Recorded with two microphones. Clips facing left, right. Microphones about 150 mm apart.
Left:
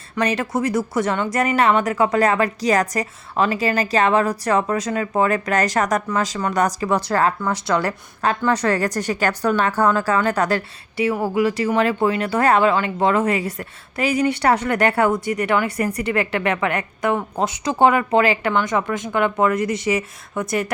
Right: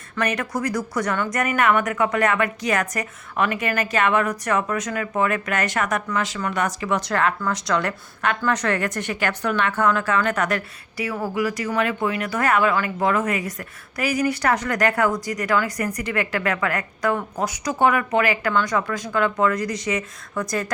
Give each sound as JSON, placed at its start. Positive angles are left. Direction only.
{"t": 0.2, "sound": "a woman's voice", "side_deg": 25}